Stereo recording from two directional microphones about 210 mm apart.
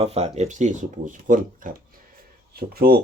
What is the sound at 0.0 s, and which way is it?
Speech, 30° right (ahead or behind).